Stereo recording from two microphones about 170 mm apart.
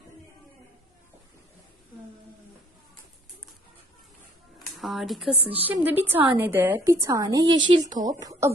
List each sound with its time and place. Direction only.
4.6 s a woman's voice: centre (ahead or behind); by 8.5 s 20° right (ahead or behind)